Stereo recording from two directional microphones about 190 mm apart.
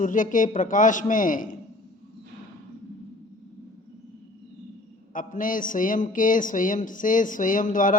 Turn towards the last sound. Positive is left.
turn(degrees=45)  # may be behind; listen again after turning